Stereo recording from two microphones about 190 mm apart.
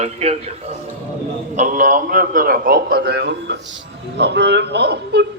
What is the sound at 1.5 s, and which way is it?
A man's voice, 40° right (ahead or behind).